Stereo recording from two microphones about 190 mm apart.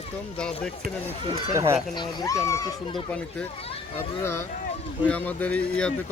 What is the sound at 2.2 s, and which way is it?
Speech, 15° left (ahead or behind).